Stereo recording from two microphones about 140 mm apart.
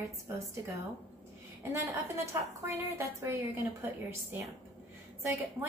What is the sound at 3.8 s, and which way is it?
Speech, 15° right (ahead or behind).